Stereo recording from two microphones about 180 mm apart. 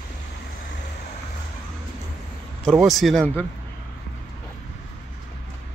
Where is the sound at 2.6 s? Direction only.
Centre (ahead or behind).